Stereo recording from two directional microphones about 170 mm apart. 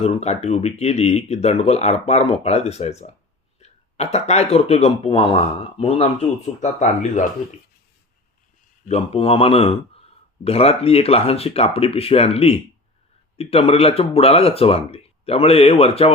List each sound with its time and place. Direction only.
0.0 s speech: 40° left (ahead or behind)
8.9 s speech: 35° left (ahead or behind)